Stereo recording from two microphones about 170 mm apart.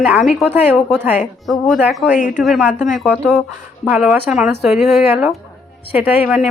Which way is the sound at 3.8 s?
10° right (ahead or behind).